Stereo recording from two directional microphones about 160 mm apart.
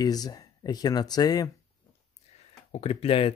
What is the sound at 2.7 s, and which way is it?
Speech, 40° left (ahead or behind).